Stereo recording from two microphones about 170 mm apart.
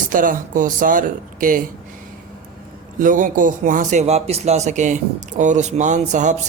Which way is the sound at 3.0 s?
50° right (ahead or behind).